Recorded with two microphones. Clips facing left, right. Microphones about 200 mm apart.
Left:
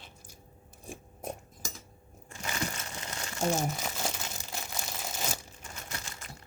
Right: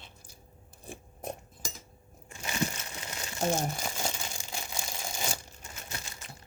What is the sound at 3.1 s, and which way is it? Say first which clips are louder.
Crumpling: even; 15° right (ahead or behind).